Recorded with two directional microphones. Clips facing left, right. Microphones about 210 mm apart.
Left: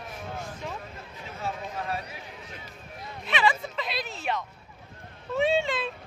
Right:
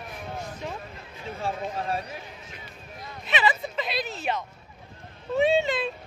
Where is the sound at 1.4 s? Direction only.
30° right (ahead or behind).